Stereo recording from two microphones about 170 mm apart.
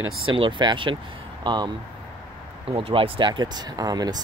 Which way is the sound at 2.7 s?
30° right (ahead or behind).